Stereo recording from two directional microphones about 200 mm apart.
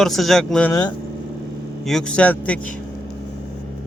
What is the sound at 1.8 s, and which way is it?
Speech, 5° left (ahead or behind).